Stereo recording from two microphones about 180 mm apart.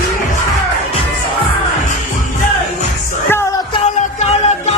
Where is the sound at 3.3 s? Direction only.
15° left (ahead or behind).